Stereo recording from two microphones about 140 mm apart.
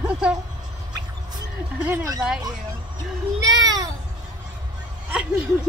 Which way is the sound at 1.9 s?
25° right (ahead or behind).